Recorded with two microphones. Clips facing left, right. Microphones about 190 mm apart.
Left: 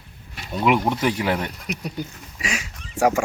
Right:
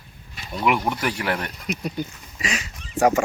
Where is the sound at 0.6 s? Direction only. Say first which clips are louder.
Left 3 dB; 20° left (ahead or behind).